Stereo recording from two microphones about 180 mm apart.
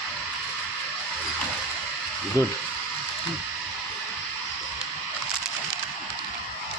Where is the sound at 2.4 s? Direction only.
20° left (ahead or behind).